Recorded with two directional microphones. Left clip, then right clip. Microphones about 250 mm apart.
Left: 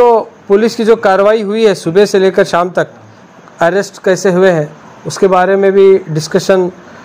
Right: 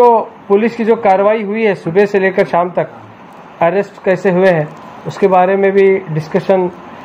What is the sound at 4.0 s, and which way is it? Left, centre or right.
A man's voice, left.